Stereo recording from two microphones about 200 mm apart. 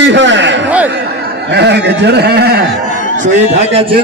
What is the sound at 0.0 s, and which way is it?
Speech, 60° right (ahead or behind).